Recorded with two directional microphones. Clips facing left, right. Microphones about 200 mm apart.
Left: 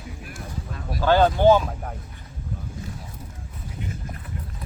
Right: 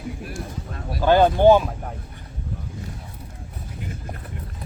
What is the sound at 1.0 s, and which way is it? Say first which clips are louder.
Speech: right 2 dB; 15° right (ahead or behind).